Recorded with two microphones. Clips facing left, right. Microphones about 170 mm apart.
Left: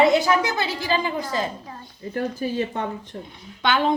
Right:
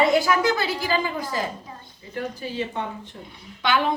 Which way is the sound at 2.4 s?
45° left (ahead or behind).